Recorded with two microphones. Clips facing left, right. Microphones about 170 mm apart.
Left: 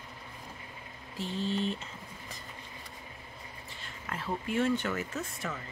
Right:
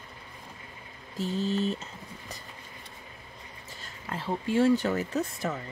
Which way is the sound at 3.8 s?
30° right (ahead or behind).